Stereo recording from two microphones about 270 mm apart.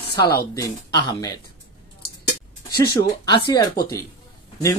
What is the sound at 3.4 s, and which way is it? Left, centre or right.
Speech, centre.